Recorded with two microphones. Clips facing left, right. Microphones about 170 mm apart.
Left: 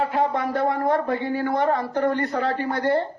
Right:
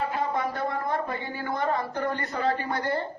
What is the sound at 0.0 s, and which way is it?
Speech, 70° left (ahead or behind).